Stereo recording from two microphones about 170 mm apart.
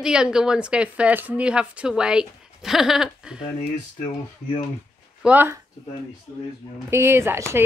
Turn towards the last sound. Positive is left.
turn(degrees=-15)  # may be behind; listen again after turning